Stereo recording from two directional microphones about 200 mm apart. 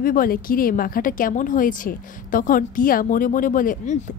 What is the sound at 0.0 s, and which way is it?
A woman's voice, 45° left (ahead or behind).